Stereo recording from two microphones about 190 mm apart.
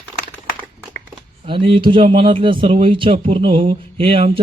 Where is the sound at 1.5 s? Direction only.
25° right (ahead or behind).